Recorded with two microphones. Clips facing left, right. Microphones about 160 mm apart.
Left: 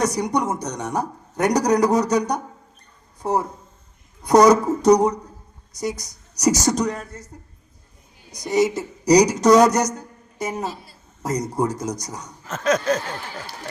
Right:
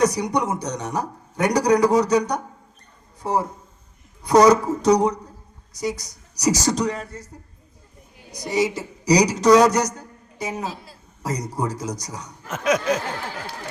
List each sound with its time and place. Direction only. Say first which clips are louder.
0.0 s a man's voice: right 1 dB; 50° left (ahead or behind)
4.2 s a man's voice: left 1 dB; 45° left (ahead or behind)
8.3 s a man's voice: left 3 dB; 50° left (ahead or behind)
12.5 s speech: left 1 dB; 10° right (ahead or behind)